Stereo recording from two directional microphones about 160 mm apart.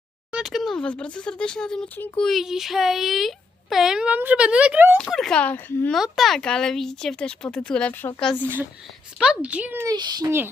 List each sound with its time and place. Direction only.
0.3 s speech: 5° right (ahead or behind)
4.9 s speech: 5° left (ahead or behind)
9.1 s speech: 5° right (ahead or behind)
9.9 s speech: 25° right (ahead or behind)